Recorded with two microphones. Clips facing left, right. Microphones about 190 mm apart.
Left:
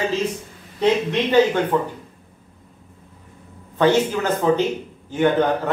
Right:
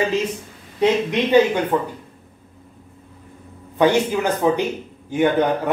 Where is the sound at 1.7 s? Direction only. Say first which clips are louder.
Right 1 dB; 10° right (ahead or behind).